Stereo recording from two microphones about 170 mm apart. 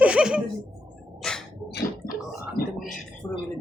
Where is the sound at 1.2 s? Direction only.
5° left (ahead or behind).